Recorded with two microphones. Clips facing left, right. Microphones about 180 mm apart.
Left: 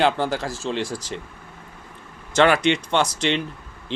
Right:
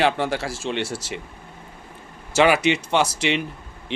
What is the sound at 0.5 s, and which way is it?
Speech, 85° right.